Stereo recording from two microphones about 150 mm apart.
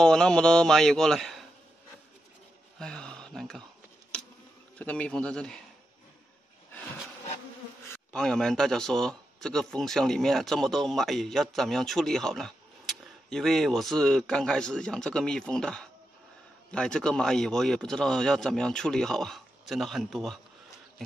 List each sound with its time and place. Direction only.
0.0 s a man's voice: 5° left (ahead or behind)
2.8 s a sound: 5° left (ahead or behind)
4.1 s insect: 5° left (ahead or behind)
4.7 s a man's voice: 10° left (ahead or behind)
7.9 s a man's voice: 5° left (ahead or behind)